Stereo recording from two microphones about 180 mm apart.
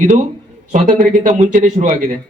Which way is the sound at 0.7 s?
45° right (ahead or behind).